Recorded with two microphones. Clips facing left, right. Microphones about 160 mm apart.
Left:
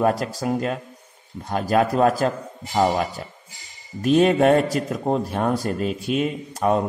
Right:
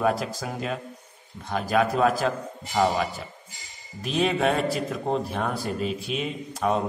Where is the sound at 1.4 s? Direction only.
40° left (ahead or behind).